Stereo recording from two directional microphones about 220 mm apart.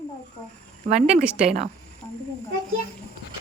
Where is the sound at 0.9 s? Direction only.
5° right (ahead or behind).